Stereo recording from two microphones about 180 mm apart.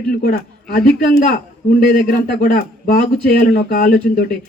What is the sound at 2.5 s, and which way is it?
A man's voice, 50° left (ahead or behind).